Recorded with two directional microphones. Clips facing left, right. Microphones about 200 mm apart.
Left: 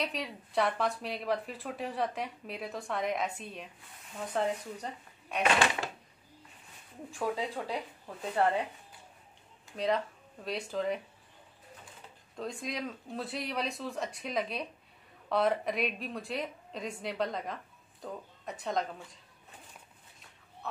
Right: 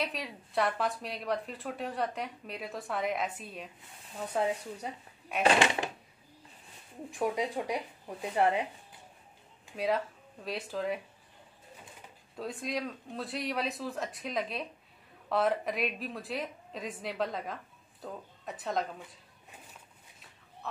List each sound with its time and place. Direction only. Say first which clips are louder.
0.0 s a woman's voice: even; centre (ahead or behind)
7.1 s a woman's voice: right 2 dB; 15° right (ahead or behind)
9.7 s speech: even; 5° right (ahead or behind)
12.4 s speech: right 2 dB; centre (ahead or behind)